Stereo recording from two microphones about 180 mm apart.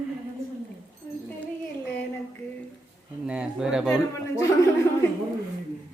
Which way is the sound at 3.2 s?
5° right (ahead or behind).